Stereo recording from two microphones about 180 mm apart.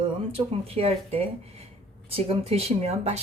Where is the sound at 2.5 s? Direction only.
35° right (ahead or behind).